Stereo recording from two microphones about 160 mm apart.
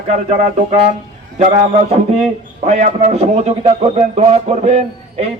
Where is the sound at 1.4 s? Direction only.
45° right (ahead or behind).